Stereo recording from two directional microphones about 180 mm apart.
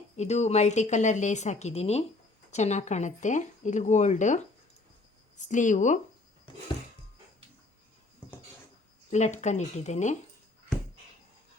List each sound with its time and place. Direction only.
0.2 s a woman's voice: 40° left (ahead or behind)
5.5 s speech: 45° left (ahead or behind)
9.0 s a woman's voice: 40° left (ahead or behind)